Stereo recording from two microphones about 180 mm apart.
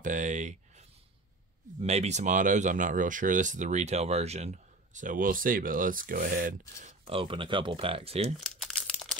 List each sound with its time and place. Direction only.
0.0 s speech: 45° right (ahead or behind)
7.2 s speech: 30° right (ahead or behind)
8.5 s crumpling: centre (ahead or behind)